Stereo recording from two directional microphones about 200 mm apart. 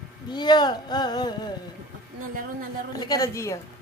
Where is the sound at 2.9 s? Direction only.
20° left (ahead or behind).